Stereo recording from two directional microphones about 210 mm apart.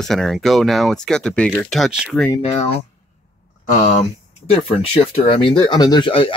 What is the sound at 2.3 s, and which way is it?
Speech, 25° left (ahead or behind).